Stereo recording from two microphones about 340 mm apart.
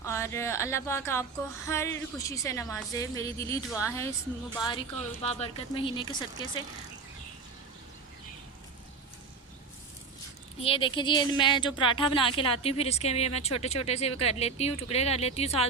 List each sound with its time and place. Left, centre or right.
0.0 s a woman's voice: centre
10.6 s a woman's voice: centre